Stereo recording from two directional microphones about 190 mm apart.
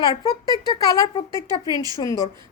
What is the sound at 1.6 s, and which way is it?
Speech, 20° right (ahead or behind).